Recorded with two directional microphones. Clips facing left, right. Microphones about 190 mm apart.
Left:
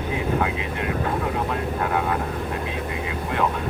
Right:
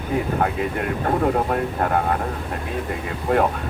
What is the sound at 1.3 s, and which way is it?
Speech, 50° right (ahead or behind).